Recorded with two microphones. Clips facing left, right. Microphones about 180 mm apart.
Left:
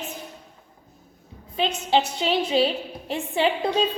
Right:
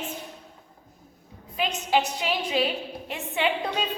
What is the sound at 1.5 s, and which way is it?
A woman's voice, 30° left (ahead or behind).